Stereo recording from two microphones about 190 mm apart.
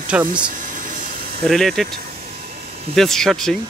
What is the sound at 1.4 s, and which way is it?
Speech, centre (ahead or behind).